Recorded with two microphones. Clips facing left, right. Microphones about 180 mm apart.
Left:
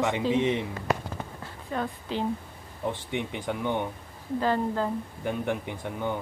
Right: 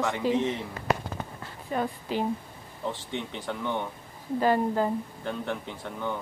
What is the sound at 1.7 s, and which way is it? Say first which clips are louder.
Speech: right 2 dB; 5° right (ahead or behind).